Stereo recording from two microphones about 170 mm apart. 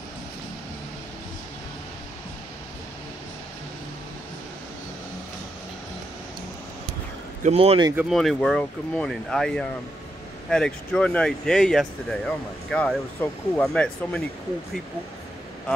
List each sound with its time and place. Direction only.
7.4 s speech: 35° right (ahead or behind)
7.9 s speech: 5° right (ahead or behind)